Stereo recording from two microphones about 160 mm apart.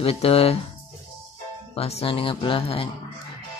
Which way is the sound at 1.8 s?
40° left (ahead or behind).